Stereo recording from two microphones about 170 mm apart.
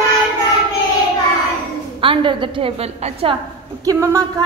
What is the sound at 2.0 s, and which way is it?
A woman's voice, 30° right (ahead or behind).